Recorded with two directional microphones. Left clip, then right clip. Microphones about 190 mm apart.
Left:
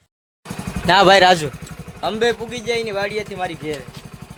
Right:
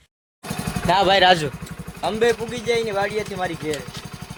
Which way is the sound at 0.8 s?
50° left (ahead or behind).